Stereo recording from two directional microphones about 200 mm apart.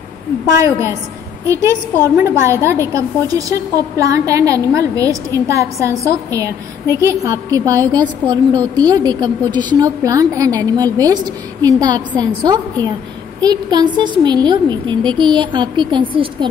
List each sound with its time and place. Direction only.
0.6 s a woman's voice: 15° right (ahead or behind)
2.1 s a woman's voice: 15° right (ahead or behind)